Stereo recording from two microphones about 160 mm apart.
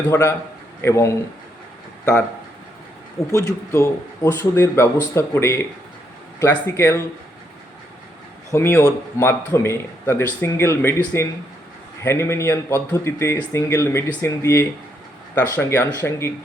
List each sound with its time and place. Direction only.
0.1 s a man's voice: 15° left (ahead or behind)
3.3 s a man's voice: 20° left (ahead or behind)
8.5 s a man's voice: 15° left (ahead or behind)